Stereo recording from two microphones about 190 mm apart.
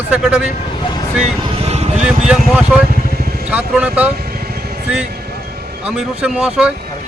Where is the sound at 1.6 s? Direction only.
35° right (ahead or behind).